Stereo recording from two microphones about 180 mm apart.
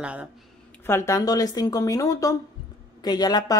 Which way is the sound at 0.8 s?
15° left (ahead or behind).